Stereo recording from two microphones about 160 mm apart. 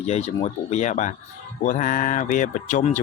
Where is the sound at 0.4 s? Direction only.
45° left (ahead or behind).